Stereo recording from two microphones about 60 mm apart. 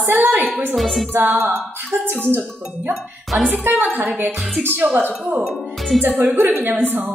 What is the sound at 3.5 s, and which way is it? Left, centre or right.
Speech, right.